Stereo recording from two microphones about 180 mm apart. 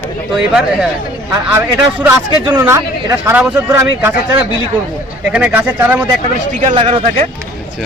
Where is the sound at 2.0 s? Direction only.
15° right (ahead or behind).